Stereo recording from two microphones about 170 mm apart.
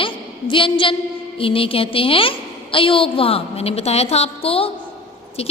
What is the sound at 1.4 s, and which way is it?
A woman's voice, 30° left (ahead or behind).